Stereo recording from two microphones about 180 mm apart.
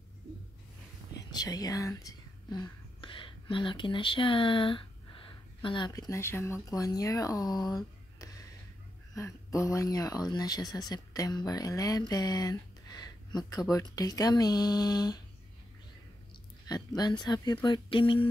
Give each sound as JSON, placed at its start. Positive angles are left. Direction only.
{"t": 1.3, "sound": "speech", "side_deg": 20}
{"t": 16.6, "sound": "speech", "side_deg": 20}